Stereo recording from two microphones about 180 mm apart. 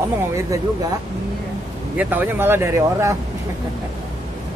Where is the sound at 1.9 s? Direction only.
10° right (ahead or behind).